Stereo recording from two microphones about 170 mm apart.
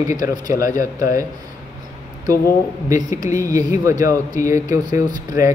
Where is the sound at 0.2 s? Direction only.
20° right (ahead or behind).